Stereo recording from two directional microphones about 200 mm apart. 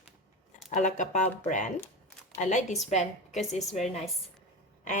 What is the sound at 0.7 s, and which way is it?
A woman's voice, 40° left (ahead or behind).